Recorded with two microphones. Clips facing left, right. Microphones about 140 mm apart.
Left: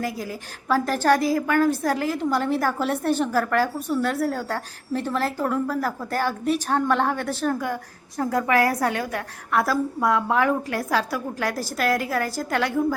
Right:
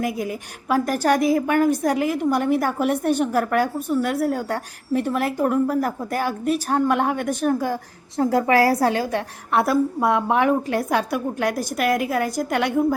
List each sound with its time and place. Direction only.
0.0 s a woman's voice: 20° right (ahead or behind)
7.6 s a woman's voice: 30° right (ahead or behind)